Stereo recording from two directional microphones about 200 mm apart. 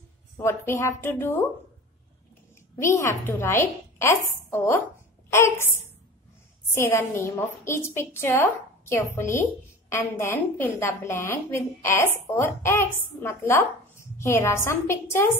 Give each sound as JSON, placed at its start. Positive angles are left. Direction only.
{"t": 0.4, "sound": "a woman's voice", "side_deg": 10}
{"t": 2.7, "sound": "a woman's voice", "side_deg": 15}
{"t": 6.7, "sound": "a woman's voice", "side_deg": 15}